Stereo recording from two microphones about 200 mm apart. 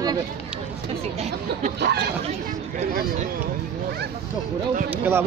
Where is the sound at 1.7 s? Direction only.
55° right (ahead or behind).